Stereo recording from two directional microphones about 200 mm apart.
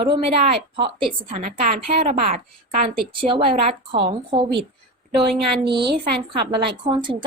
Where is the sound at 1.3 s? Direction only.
35° right (ahead or behind).